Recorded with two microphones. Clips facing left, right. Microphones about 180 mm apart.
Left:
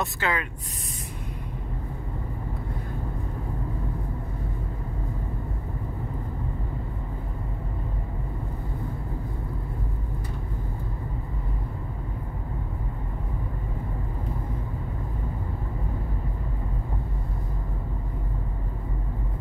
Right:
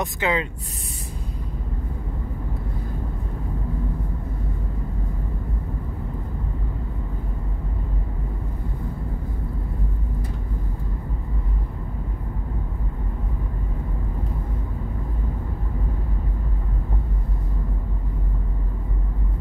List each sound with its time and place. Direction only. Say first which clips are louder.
0.0 s speech: right 4 dB; 20° right (ahead or behind)